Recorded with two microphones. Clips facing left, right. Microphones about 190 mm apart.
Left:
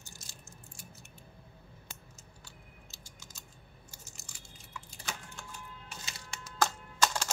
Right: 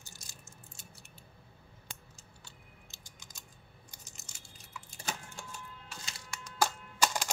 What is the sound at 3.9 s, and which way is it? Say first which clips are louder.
Crunch: left 3 dB; 15° right (ahead or behind).